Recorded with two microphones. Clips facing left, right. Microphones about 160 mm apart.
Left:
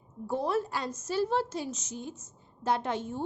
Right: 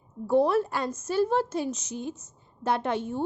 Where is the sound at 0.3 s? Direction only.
65° right (ahead or behind).